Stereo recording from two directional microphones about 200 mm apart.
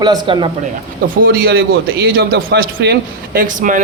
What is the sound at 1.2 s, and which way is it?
A man's voice, 45° right (ahead or behind).